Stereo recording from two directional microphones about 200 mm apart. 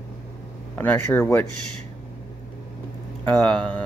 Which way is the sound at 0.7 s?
10° left (ahead or behind).